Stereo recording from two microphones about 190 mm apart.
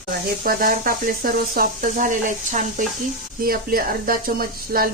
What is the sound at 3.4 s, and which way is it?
Speech, 50° right (ahead or behind).